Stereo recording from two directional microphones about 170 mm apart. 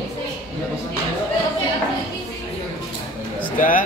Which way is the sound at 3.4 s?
55° left (ahead or behind).